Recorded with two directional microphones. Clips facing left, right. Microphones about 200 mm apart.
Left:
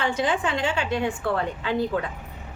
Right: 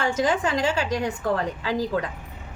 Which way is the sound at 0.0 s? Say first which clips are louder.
Right 2 dB; 45° right (ahead or behind).